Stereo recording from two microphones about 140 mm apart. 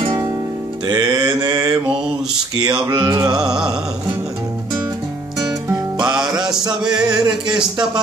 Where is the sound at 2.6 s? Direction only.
30° right (ahead or behind).